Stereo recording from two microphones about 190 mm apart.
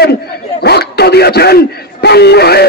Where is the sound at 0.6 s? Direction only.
60° left (ahead or behind).